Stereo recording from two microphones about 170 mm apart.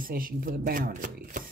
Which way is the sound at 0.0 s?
55° right (ahead or behind).